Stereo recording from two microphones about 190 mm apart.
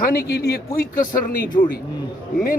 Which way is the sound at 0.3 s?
55° left (ahead or behind).